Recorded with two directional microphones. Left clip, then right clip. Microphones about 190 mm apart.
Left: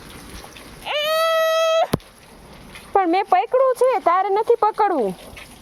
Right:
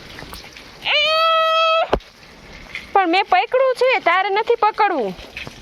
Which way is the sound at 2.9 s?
20° left (ahead or behind).